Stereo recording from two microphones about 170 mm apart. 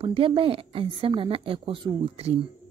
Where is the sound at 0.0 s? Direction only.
30° right (ahead or behind).